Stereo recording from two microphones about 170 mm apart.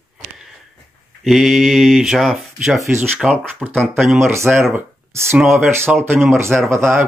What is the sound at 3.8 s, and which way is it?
Speech, 15° right (ahead or behind).